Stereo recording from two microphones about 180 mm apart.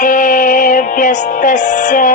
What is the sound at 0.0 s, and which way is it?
Music, 45° left (ahead or behind).